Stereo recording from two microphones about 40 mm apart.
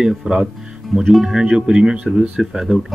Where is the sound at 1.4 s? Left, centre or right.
Right.